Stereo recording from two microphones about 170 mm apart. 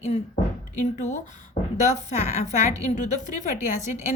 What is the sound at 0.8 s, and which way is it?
Speech, 45° left (ahead or behind).